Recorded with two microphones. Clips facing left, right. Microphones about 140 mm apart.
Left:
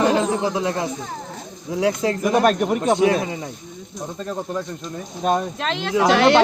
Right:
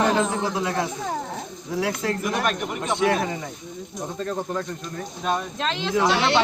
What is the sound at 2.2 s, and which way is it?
Speech, 35° left (ahead or behind).